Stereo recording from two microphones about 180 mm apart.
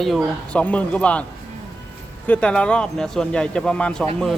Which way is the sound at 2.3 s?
5° left (ahead or behind).